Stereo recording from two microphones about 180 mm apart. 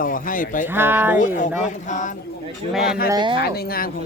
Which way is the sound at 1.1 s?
45° left (ahead or behind).